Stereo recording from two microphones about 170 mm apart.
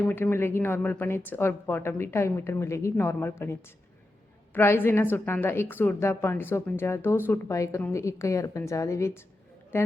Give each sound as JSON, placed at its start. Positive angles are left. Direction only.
{"t": 0.0, "sound": "speech", "side_deg": 10}